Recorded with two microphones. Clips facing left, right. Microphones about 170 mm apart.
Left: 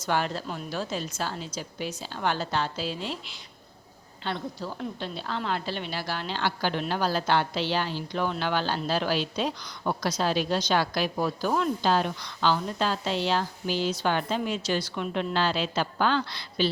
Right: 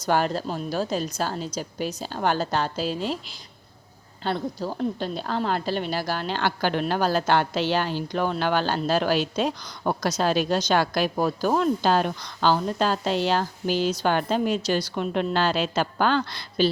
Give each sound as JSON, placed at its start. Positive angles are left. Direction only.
{"t": 0.0, "sound": "a woman's voice", "side_deg": -40}
{"t": 4.2, "sound": "a woman's voice", "side_deg": -40}